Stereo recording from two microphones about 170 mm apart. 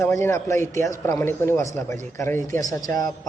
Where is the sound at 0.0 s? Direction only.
15° left (ahead or behind).